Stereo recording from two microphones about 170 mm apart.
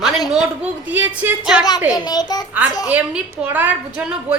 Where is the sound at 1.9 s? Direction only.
25° left (ahead or behind).